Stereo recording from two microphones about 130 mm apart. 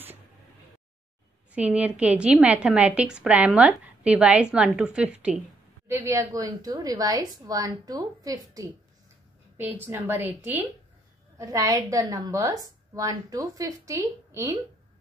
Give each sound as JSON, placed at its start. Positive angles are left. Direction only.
{"t": 1.5, "sound": "a woman's voice", "side_deg": -10}
{"t": 5.9, "sound": "a woman's voice", "side_deg": -20}
{"t": 9.6, "sound": "a woman's voice", "side_deg": -15}
{"t": 11.3, "sound": "a woman's voice", "side_deg": -25}